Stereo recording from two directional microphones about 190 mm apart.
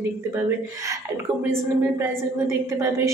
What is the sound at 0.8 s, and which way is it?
Speech, 15° right (ahead or behind).